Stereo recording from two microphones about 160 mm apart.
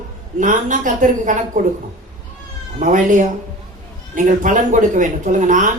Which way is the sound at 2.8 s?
55° right (ahead or behind).